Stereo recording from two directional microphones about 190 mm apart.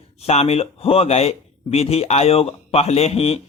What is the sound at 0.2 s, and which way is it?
Speech, 35° left (ahead or behind).